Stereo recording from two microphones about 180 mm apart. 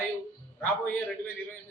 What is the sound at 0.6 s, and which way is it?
Speech, 10° left (ahead or behind).